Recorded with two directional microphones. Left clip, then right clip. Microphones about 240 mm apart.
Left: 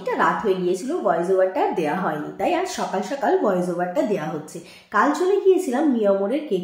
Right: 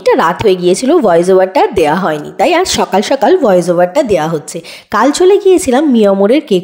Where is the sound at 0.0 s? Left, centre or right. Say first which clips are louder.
Right 12 dB; right.